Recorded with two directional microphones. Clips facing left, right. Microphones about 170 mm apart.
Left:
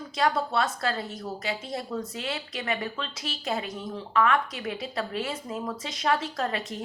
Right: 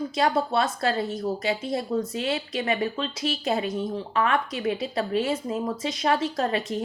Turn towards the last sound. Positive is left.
turn(degrees=-25)  # may be behind; listen again after turning